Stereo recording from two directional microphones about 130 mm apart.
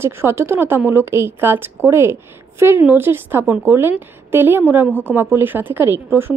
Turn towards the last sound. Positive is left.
turn(degrees=-15)  # may be behind; listen again after turning